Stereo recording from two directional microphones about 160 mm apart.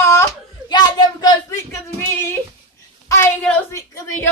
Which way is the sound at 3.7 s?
20° left (ahead or behind).